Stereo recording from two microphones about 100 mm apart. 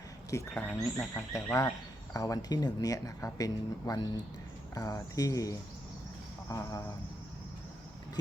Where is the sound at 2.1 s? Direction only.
35° left (ahead or behind).